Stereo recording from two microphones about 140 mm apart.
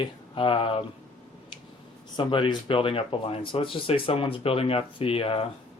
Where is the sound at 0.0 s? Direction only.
40° left (ahead or behind).